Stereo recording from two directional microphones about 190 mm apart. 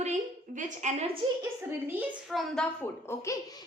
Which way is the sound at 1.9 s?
5° right (ahead or behind).